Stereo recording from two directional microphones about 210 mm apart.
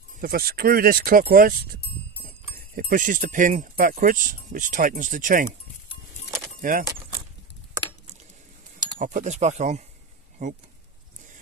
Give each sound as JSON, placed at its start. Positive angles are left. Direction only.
{"t": 0.2, "sound": "speech", "side_deg": -45}
{"t": 6.6, "sound": "speech", "side_deg": -40}
{"t": 9.0, "sound": "speech", "side_deg": -35}